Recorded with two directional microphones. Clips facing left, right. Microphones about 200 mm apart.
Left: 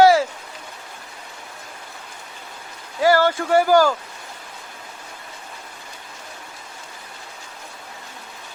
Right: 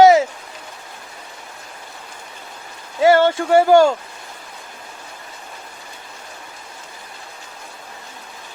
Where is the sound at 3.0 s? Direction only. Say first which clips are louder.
Right 3 dB; 25° right (ahead or behind).